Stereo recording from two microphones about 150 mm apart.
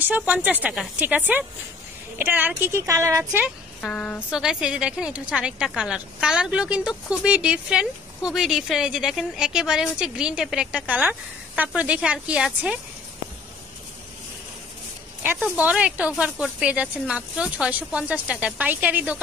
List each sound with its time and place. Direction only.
0.0 s speech: 10° right (ahead or behind)
3.3 s speech: 10° right (ahead or behind)
3.8 s a woman's voice: 10° left (ahead or behind)
4.3 s a woman's voice: 5° right (ahead or behind)
15.4 s speech: 10° right (ahead or behind)